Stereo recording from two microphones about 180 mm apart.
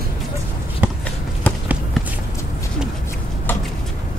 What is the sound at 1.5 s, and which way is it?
Run, 10° left (ahead or behind).